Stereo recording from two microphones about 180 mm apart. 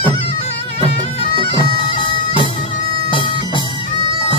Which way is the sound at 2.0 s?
30° left (ahead or behind).